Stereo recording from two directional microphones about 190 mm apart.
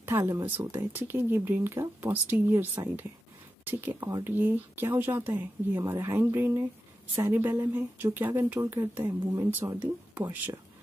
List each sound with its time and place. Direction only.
0.0 s speech: 10° right (ahead or behind)
4.0 s speech: 20° right (ahead or behind)
4.4 s speech: 10° right (ahead or behind)